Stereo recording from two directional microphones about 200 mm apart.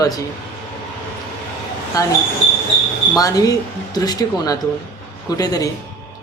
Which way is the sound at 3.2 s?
20° left (ahead or behind).